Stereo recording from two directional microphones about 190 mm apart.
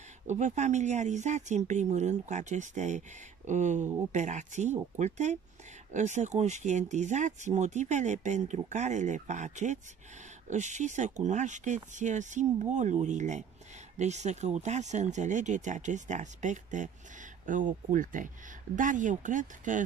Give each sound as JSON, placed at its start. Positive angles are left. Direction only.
{"t": 0.3, "sound": "speech", "side_deg": -40}